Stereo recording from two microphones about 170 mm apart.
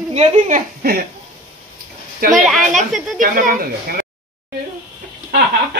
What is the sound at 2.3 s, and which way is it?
Speech, centre (ahead or behind).